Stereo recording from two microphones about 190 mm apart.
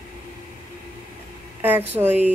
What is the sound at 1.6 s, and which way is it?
Speech, 10° right (ahead or behind).